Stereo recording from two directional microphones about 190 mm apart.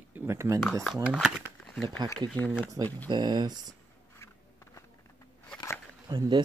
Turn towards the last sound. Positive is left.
turn(degrees=-25)  # may be behind; listen again after turning